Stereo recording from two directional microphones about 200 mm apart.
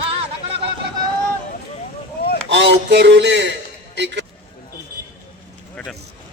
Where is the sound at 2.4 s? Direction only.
65° right (ahead or behind).